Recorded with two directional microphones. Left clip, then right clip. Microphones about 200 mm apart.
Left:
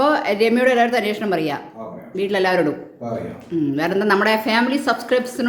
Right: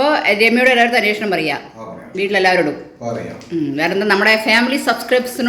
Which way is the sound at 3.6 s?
10° left (ahead or behind).